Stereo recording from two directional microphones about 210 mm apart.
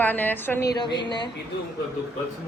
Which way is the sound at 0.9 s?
20° left (ahead or behind).